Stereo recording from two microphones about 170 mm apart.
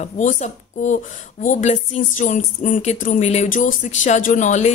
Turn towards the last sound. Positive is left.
turn(degrees=45)  # may be behind; listen again after turning